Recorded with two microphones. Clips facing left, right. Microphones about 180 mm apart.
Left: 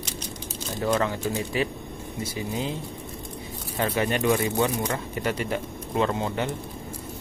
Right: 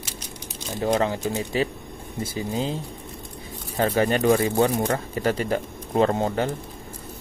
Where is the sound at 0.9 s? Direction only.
25° right (ahead or behind).